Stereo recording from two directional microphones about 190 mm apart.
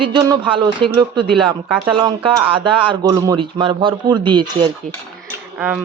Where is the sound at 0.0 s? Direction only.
25° right (ahead or behind).